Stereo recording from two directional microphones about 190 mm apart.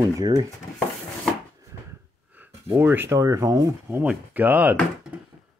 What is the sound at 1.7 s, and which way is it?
Wheeze, 55° left (ahead or behind).